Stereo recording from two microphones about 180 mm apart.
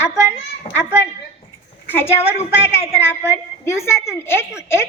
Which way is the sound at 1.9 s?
10° left (ahead or behind).